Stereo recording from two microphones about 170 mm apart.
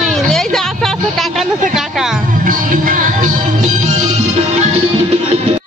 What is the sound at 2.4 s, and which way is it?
Music, 55° right (ahead or behind).